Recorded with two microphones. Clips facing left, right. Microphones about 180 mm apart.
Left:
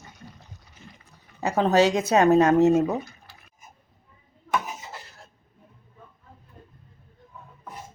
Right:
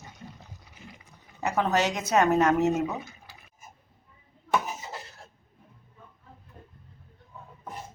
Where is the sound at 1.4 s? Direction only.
30° left (ahead or behind).